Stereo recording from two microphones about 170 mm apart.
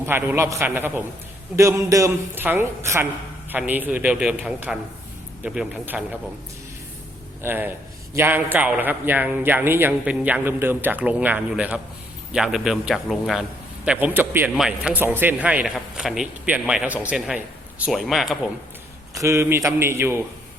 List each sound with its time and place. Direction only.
0.0 s a man's voice: 10° right (ahead or behind)
7.4 s a man's voice: 10° right (ahead or behind)
19.1 s a man's voice: 15° right (ahead or behind)